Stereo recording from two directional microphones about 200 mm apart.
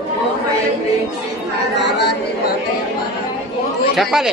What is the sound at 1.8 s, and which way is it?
Chatter, 60° left (ahead or behind).